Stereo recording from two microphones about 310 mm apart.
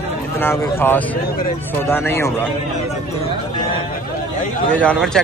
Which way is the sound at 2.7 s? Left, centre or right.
Centre.